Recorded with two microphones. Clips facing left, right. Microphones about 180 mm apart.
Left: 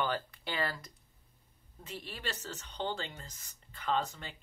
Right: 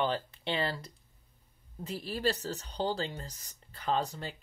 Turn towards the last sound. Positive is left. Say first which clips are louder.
# right 2 dB
turn(degrees=-35)  # may be behind; listen again after turning